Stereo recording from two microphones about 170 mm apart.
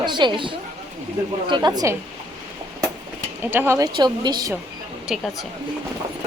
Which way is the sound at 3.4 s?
15° right (ahead or behind).